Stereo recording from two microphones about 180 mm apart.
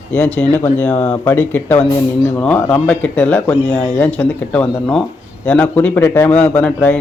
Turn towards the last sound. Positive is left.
turn(degrees=5)  # may be behind; listen again after turning